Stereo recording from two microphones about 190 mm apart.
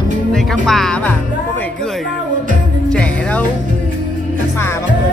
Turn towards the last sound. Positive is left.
turn(degrees=5)  # may be behind; listen again after turning